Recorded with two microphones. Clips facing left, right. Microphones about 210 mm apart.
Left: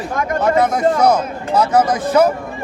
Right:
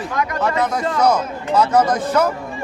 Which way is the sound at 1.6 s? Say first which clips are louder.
Left 1 dB; 10° left (ahead or behind).